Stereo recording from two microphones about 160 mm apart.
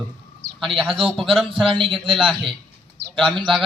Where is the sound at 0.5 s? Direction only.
Centre (ahead or behind).